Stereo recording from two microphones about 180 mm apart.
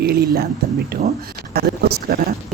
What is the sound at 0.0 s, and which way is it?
Speech, 55° right (ahead or behind).